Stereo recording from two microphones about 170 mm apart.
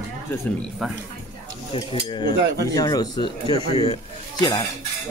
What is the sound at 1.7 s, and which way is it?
Speech, 30° left (ahead or behind).